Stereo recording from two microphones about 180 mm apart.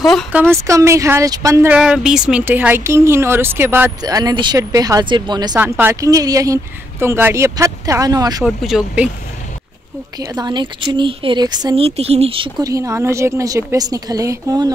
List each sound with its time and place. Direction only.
0.0 s speech: 5° right (ahead or behind); by 5.6 s 25° right (ahead or behind)
5.6 s speech: 10° right (ahead or behind)
8.5 s speech: centre (ahead or behind)
10.1 s speech: 20° right (ahead or behind)
12.6 s speech: 15° right (ahead or behind)